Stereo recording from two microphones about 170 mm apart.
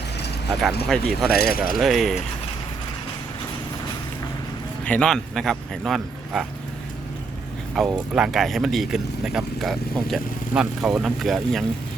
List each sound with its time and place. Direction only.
0.9 s speech: centre (ahead or behind)
1.4 s a man's voice: 60° left (ahead or behind)
1.7 s speech: centre (ahead or behind)
4.9 s speech: 5° left (ahead or behind)
7.8 s speech: 5° right (ahead or behind)